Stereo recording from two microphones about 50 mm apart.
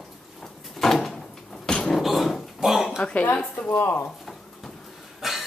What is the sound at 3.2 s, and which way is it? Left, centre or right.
Speech, left.